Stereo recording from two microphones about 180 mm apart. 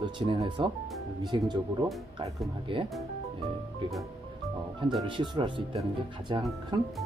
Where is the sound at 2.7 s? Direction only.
30° right (ahead or behind).